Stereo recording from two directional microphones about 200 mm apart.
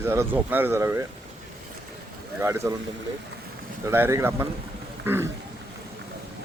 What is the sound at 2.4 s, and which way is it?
Speech, 15° right (ahead or behind).